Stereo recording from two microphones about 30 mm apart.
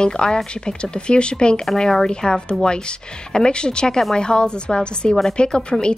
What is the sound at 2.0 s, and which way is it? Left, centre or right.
A woman's voice, left.